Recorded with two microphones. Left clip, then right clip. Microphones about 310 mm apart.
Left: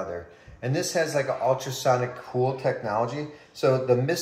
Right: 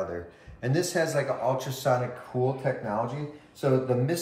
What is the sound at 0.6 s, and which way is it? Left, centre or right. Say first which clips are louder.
Speech: left 1 dB; centre.